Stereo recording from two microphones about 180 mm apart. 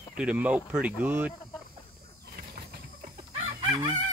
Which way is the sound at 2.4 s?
55° right (ahead or behind).